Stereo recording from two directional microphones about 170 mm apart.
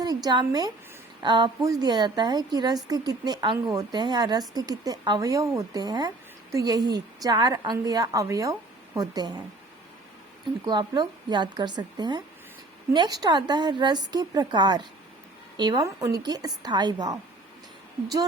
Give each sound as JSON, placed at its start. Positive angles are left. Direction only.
{"t": 0.0, "sound": "a woman's voice", "side_deg": -25}
{"t": 10.7, "sound": "a woman's voice", "side_deg": -25}